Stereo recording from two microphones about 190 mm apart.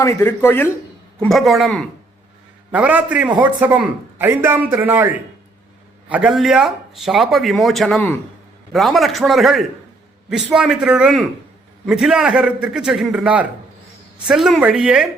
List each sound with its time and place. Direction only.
0.0 s a man's voice: 15° left (ahead or behind)
1.2 s a man's voice: centre (ahead or behind)